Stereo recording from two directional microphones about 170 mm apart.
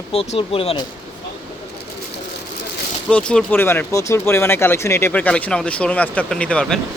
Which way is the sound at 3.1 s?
5° left (ahead or behind).